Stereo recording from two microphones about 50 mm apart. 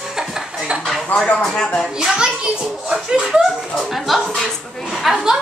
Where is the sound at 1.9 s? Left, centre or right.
Centre.